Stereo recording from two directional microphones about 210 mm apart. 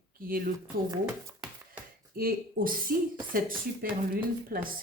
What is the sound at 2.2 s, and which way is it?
Speech, 45° right (ahead or behind).